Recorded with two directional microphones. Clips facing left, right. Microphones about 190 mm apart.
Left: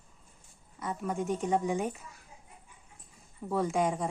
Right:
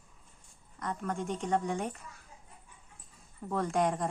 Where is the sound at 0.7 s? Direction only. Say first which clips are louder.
Left 2 dB; 5° left (ahead or behind).